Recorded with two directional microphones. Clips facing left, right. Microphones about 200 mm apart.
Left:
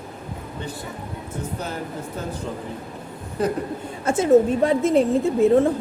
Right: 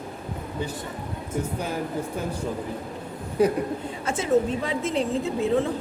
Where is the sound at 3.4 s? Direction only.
10° right (ahead or behind).